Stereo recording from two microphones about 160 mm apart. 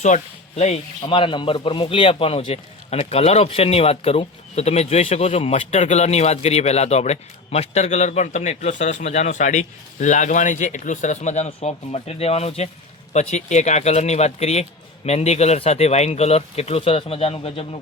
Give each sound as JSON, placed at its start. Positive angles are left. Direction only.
{"t": 0.0, "sound": "speech", "side_deg": 45}
{"t": 1.0, "sound": "speech", "side_deg": 30}